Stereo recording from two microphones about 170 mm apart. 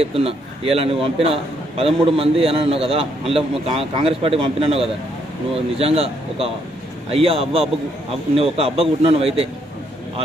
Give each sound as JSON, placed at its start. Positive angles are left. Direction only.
{"t": 0.0, "sound": "a man's voice", "side_deg": -35}